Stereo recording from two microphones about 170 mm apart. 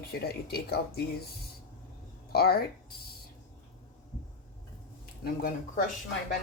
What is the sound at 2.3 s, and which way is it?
Speech, 65° left (ahead or behind).